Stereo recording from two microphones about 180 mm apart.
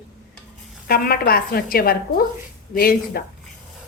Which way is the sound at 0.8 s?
55° left (ahead or behind).